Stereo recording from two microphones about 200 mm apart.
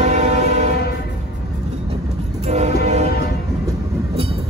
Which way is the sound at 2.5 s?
35° right (ahead or behind).